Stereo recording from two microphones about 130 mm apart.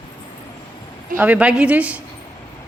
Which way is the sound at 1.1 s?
10° right (ahead or behind).